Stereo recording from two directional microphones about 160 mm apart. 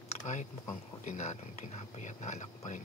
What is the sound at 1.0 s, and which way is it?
Speech, 50° left (ahead or behind).